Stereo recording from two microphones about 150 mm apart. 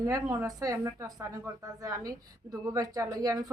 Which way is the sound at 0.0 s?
20° right (ahead or behind).